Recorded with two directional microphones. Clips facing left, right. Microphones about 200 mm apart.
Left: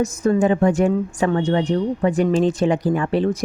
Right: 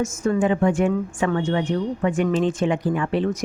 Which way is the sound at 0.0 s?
35° left (ahead or behind).